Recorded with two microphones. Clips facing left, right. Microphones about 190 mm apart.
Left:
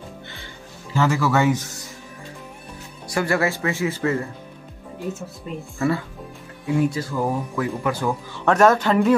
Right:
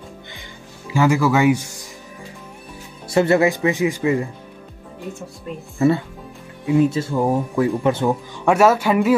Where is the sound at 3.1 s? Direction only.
25° right (ahead or behind).